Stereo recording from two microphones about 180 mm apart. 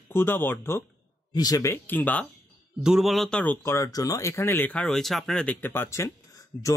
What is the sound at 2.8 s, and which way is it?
Speech, centre (ahead or behind).